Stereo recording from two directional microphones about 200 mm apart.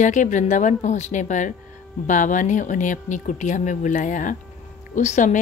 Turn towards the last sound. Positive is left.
turn(degrees=40)  # may be behind; listen again after turning